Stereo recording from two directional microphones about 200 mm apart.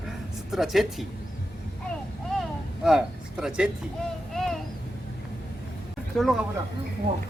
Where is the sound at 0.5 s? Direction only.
Centre (ahead or behind).